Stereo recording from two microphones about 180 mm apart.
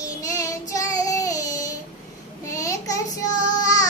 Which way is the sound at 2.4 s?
15° left (ahead or behind).